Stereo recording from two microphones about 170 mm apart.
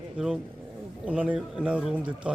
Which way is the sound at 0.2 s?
5° right (ahead or behind).